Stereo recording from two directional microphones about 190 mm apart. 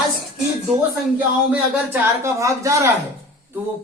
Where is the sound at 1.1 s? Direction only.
10° right (ahead or behind).